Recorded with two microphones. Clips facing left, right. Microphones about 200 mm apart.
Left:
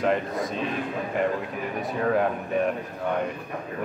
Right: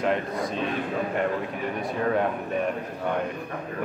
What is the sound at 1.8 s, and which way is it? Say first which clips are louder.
Speech: left 1 dB; centre (ahead or behind).